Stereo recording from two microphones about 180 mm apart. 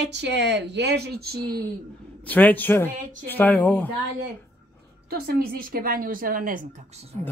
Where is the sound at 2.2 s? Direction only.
10° left (ahead or behind).